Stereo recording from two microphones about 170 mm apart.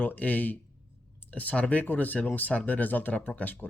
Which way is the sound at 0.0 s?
10° left (ahead or behind).